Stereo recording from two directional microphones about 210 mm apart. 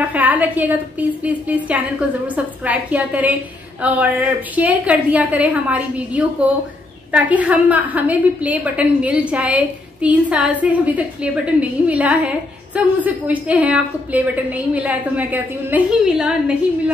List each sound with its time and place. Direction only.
0.1 s a woman's voice: 5° right (ahead or behind)